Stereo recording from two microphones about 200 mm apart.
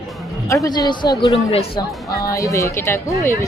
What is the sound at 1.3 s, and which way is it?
Speech, 30° left (ahead or behind).